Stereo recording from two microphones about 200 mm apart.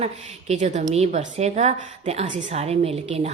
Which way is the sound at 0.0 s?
35° right (ahead or behind).